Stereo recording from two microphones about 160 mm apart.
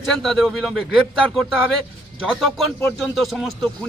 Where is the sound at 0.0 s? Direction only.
Centre (ahead or behind).